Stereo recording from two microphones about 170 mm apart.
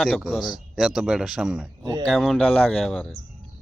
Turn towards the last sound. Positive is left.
turn(degrees=5)  # may be behind; listen again after turning